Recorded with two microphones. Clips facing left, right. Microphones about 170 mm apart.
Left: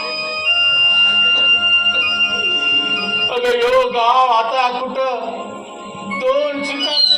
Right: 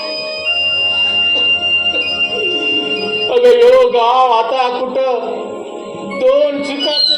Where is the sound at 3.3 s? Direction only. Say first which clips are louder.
Right 8 dB; 40° right (ahead or behind).